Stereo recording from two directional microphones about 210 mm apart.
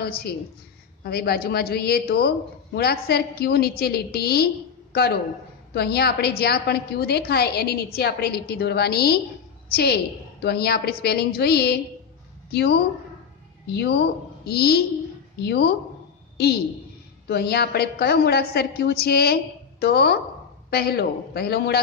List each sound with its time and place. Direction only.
0.0 s a woman's voice: 45° left (ahead or behind)
13.7 s a woman's voice: 50° left (ahead or behind)